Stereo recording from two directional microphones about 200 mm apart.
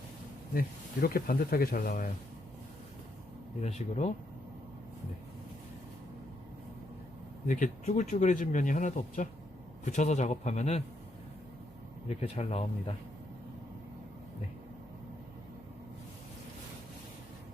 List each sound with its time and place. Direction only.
1.0 s speech: 50° left (ahead or behind)
3.6 s speech: 35° left (ahead or behind)
7.4 s speech: 40° left (ahead or behind)
12.0 s speech: 30° left (ahead or behind)